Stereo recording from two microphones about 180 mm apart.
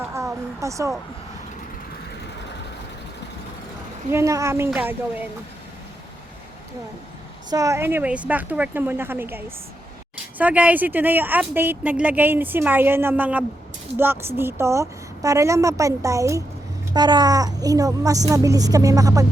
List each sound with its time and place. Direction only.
0.1 s speech: 15° right (ahead or behind)
4.1 s a woman's voice: 15° right (ahead or behind)
7.5 s a woman's voice: 15° right (ahead or behind)